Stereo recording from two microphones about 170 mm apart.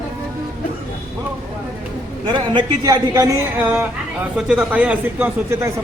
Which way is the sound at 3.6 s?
10° right (ahead or behind).